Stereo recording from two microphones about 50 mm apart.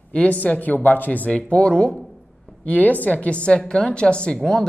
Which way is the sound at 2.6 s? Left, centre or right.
Left.